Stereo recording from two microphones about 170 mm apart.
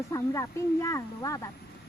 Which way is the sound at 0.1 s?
20° left (ahead or behind).